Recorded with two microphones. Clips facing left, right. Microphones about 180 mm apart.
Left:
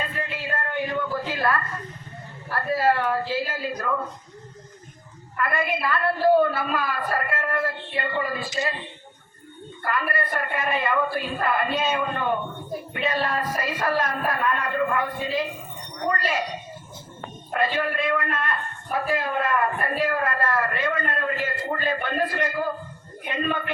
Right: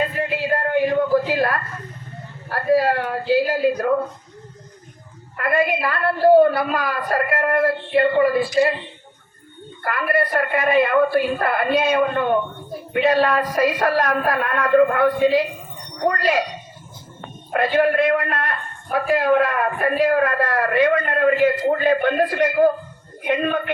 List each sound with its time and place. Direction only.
0.2 s a sound: 65° right (ahead or behind)
1.3 s a woman's voice: 65° right (ahead or behind)
5.4 s a man's voice: 60° right (ahead or behind)
7.1 s a man's voice: 50° right (ahead or behind)
9.8 s a man's voice: 65° right (ahead or behind)
17.5 s a man's voice: 70° right (ahead or behind)